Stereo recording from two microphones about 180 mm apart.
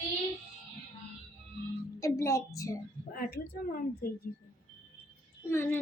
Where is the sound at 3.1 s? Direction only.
55° left (ahead or behind).